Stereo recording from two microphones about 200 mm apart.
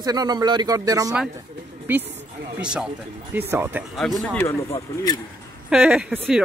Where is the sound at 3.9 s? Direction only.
Centre (ahead or behind).